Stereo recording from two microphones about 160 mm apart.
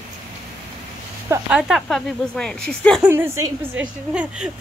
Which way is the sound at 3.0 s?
15° right (ahead or behind).